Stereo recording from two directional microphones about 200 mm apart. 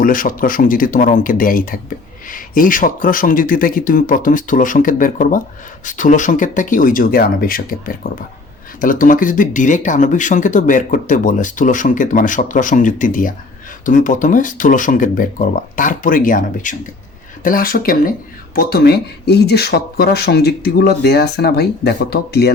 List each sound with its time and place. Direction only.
0.0 s speech: 45° left (ahead or behind)